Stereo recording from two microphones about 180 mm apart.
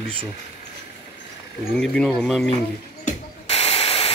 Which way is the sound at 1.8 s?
5° left (ahead or behind).